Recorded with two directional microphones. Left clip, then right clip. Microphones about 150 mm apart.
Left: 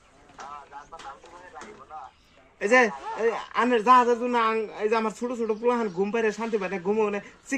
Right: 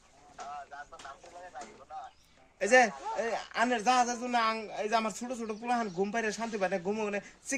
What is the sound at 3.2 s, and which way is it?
Speech, 60° right (ahead or behind).